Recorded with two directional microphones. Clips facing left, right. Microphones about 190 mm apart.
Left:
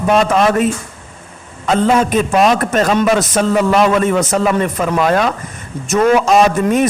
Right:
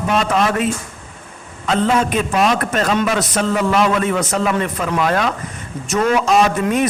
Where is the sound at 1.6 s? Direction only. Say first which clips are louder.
Left 3 dB; 40° left (ahead or behind).